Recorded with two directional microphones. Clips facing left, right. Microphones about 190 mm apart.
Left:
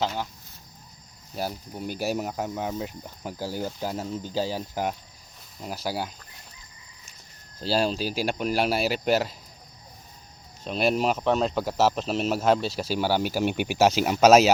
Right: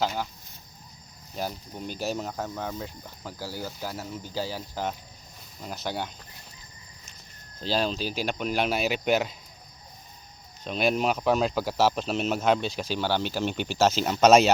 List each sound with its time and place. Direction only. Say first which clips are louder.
1.4 s speech: left 2 dB; 5° left (ahead or behind)
7.6 s speech: left 2 dB; 5° left (ahead or behind)
10.6 s speech: left 1 dB; centre (ahead or behind)